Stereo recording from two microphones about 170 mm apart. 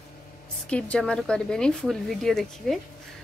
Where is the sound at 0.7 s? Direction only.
5° left (ahead or behind).